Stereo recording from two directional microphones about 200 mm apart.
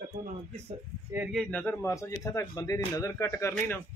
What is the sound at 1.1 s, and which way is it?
Speech, 5° right (ahead or behind).